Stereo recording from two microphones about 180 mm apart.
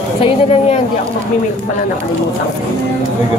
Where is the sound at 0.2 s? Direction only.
30° left (ahead or behind).